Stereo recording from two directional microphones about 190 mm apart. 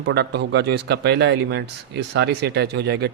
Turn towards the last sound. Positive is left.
turn(degrees=-60)  # may be behind; listen again after turning